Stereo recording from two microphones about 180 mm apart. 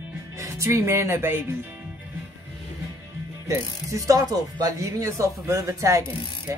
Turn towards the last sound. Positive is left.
turn(degrees=-15)  # may be behind; listen again after turning